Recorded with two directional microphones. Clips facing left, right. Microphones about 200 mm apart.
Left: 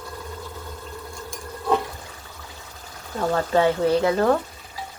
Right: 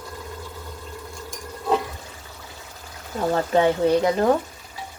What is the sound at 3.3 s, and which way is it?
Speech, 20° right (ahead or behind).